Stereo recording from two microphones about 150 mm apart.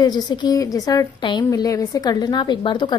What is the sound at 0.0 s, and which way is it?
A woman's voice, 30° left (ahead or behind).